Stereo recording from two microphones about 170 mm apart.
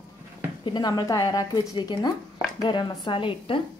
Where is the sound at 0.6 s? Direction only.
25° left (ahead or behind).